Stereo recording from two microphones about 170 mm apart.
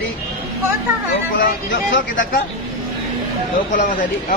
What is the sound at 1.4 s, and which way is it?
Speech, 60° left (ahead or behind).